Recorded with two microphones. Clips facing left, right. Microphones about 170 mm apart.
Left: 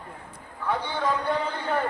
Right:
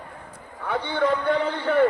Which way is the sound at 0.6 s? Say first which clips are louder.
Right 3 dB; 60° right (ahead or behind).